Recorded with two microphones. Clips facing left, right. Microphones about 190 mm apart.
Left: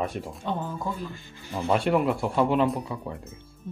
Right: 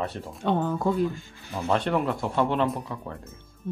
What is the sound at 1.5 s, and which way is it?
Speech, 10° left (ahead or behind).